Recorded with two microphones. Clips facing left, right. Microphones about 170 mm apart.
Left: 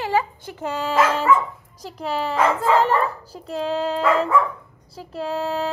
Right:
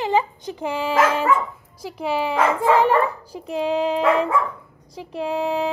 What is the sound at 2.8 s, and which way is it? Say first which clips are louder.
Speech: right 2 dB; 10° right (ahead or behind).